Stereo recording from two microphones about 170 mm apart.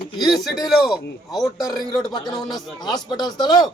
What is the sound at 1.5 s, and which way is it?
A man's voice, 20° left (ahead or behind).